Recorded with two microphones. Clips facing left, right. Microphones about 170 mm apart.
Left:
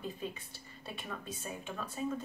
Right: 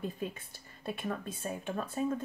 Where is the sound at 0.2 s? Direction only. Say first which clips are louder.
Right 3 dB; 50° right (ahead or behind).